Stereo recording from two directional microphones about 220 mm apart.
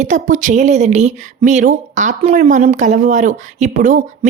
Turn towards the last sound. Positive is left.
turn(degrees=-35)  # may be behind; listen again after turning